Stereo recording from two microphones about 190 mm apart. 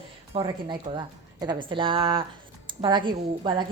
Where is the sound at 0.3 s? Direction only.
25° right (ahead or behind).